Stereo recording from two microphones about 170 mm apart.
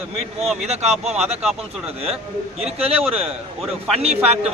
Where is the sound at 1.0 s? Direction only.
5° right (ahead or behind).